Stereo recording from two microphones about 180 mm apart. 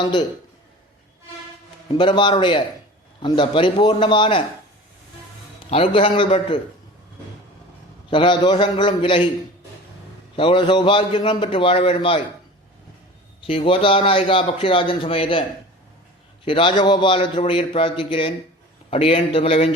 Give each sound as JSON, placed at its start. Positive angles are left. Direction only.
{"t": 0.0, "sound": "a man's voice", "side_deg": 25}
{"t": 1.9, "sound": "a man's voice", "side_deg": 25}
{"t": 5.7, "sound": "a man's voice", "side_deg": 30}
{"t": 8.1, "sound": "a man's voice", "side_deg": 25}
{"t": 10.3, "sound": "a man's voice", "side_deg": 30}
{"t": 13.5, "sound": "a man's voice", "side_deg": 30}